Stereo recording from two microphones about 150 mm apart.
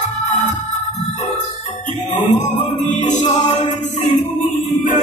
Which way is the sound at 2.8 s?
55° left (ahead or behind).